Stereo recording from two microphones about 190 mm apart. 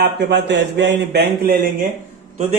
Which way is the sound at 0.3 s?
65° right (ahead or behind).